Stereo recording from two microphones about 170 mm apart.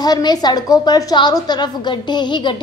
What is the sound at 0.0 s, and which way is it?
A woman's voice, 25° left (ahead or behind).